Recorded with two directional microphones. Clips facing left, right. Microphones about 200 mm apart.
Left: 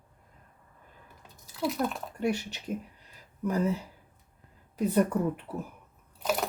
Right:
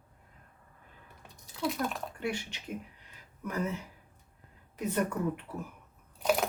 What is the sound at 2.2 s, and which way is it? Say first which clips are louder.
Speech: left 7 dB; 40° left (ahead or behind).